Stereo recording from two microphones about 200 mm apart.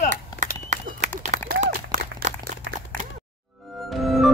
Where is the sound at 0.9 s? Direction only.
35° right (ahead or behind).